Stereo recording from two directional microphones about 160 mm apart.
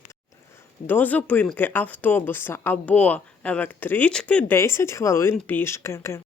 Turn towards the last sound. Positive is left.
turn(degrees=15)  # may be behind; listen again after turning